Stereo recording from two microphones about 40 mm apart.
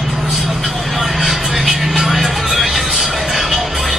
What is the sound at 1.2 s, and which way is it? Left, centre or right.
Music, centre.